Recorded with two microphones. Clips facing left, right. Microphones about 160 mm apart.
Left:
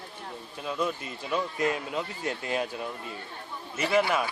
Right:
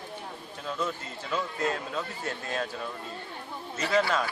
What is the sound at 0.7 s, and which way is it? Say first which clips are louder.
A man's voice: left 2 dB; 15° left (ahead or behind).